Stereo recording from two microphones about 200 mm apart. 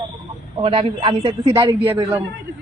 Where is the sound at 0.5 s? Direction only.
25° right (ahead or behind).